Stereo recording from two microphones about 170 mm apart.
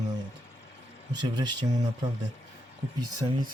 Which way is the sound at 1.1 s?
25° right (ahead or behind).